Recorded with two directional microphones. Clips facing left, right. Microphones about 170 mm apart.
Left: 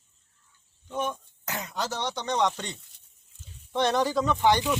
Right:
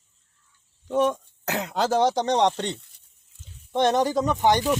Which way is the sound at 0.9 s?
85° right.